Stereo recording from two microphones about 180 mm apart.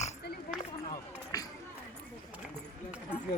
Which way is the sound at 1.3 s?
20° left (ahead or behind).